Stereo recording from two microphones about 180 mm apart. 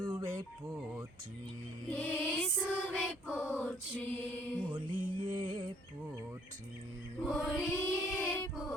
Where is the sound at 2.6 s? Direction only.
5° right (ahead or behind).